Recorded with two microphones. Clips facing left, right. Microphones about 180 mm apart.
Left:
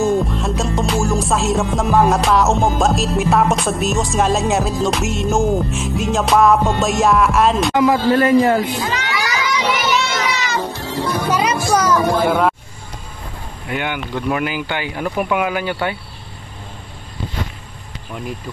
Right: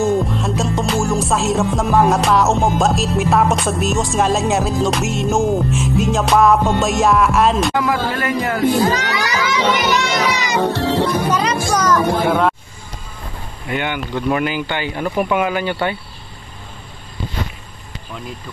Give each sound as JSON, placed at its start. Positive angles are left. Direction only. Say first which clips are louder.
{"t": 0.0, "sound": "music", "louder": "even", "side_deg": 0}
{"t": 7.7, "sound": "a man's voice", "louder": "left 5 dB", "side_deg": 20}
{"t": 8.6, "sound": "speech", "louder": "right 7 dB", "side_deg": -40}
{"t": 9.1, "sound": "children playing", "louder": "right 1 dB", "side_deg": -20}
{"t": 10.6, "sound": "speech", "louder": "right 7 dB", "side_deg": -65}
{"t": 11.2, "sound": "speech", "louder": "even", "side_deg": 10}
{"t": 12.3, "sound": "music", "louder": "even", "side_deg": 0}
{"t": 13.7, "sound": "music", "louder": "right 1 dB", "side_deg": 5}